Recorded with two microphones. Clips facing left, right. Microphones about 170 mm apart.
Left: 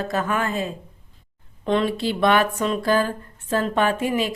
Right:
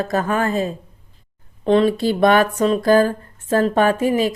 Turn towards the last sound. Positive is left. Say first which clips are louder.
# right 5 dB
turn(degrees=-40)  # may be behind; listen again after turning